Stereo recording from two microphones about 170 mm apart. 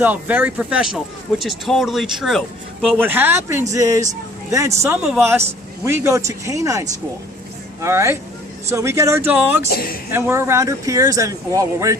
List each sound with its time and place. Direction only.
0.0 s speech: 10° right (ahead or behind)
9.6 s speech: 65° left (ahead or behind)
10.1 s speech: 15° right (ahead or behind)